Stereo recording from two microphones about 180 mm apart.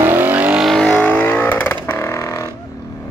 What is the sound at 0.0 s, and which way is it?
Vehicle, 10° right (ahead or behind).